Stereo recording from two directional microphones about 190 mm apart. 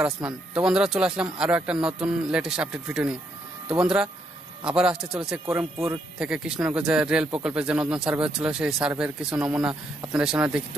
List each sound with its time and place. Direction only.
0.7 s speech: 5° right (ahead or behind)